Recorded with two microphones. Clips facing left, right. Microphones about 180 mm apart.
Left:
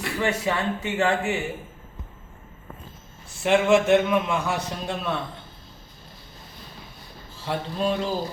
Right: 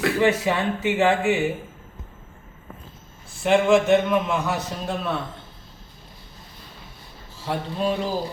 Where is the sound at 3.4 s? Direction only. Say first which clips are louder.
Right 1 dB; centre (ahead or behind).